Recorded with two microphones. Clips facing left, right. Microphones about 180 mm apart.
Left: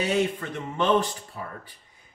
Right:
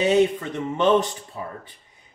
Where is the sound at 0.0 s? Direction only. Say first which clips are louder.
Right 6 dB; 20° right (ahead or behind).